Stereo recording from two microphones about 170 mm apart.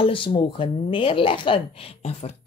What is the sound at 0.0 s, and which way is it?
Speech, 30° left (ahead or behind).